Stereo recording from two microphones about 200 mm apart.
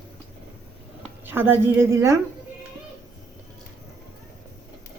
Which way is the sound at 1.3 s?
10° right (ahead or behind).